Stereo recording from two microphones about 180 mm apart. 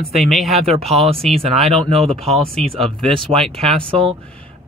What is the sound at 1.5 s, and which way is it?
Speech, 35° right (ahead or behind).